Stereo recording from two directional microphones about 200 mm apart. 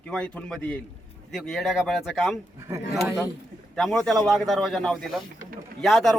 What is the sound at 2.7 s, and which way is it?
Speech, 15° right (ahead or behind).